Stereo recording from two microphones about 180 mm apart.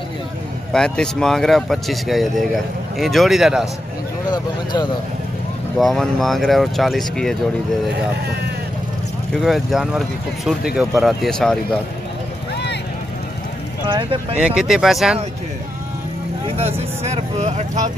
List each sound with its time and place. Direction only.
0.7 s speech: 5° left (ahead or behind)
5.8 s speech: centre (ahead or behind)
9.3 s speech: centre (ahead or behind)
14.4 s speech: 5° right (ahead or behind)
17.0 s speech: 40° right (ahead or behind)